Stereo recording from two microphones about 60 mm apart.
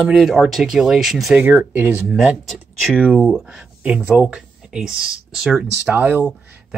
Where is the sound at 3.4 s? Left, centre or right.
Centre.